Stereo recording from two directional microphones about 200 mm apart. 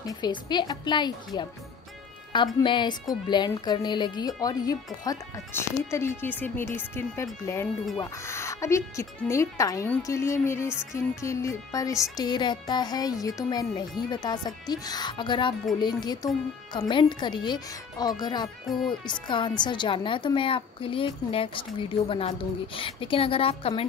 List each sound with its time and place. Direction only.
0.0 s speech: 20° left (ahead or behind)